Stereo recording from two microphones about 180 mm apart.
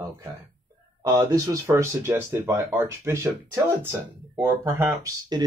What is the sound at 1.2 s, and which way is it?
Speech, 15° right (ahead or behind).